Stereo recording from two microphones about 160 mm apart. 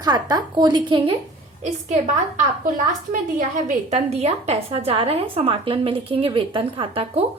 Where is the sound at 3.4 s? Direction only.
50° right (ahead or behind).